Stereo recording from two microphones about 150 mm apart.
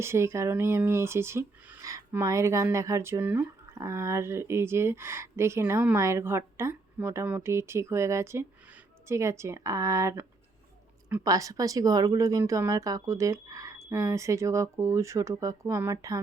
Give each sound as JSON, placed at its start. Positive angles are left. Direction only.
{"t": 0.0, "sound": "speech", "side_deg": -20}